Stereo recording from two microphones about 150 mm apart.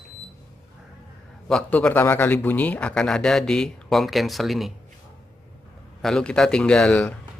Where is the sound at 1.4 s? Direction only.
5° left (ahead or behind).